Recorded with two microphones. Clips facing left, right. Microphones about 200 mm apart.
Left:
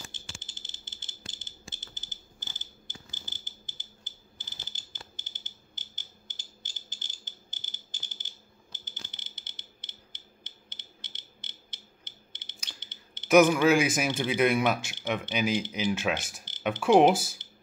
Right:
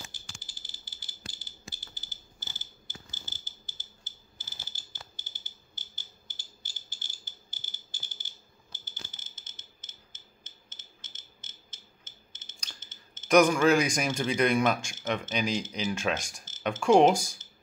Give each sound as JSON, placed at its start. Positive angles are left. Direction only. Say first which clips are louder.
{"t": 0.0, "sound": "fire alarm", "louder": "left 2 dB", "side_deg": 25}
{"t": 13.3, "sound": "a man's voice", "louder": "left 1 dB", "side_deg": 5}
{"t": 16.3, "sound": "a sound", "louder": "left 1 dB", "side_deg": 5}
{"t": 16.8, "sound": "a man's voice", "louder": "even", "side_deg": 5}